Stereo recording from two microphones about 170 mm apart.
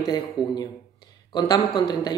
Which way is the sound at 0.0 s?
20° left (ahead or behind).